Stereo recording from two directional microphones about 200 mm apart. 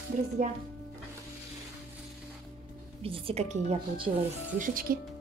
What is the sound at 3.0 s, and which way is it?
Speech, 30° right (ahead or behind).